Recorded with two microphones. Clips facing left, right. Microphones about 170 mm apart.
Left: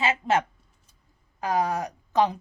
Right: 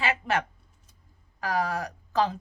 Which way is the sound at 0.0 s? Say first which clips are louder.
Left 4 dB; 20° left (ahead or behind).